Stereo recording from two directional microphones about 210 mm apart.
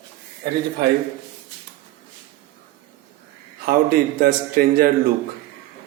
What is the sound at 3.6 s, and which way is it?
A man's voice, 45° right (ahead or behind).